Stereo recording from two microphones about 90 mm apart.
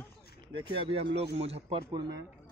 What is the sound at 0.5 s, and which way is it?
Speech, 65° right (ahead or behind).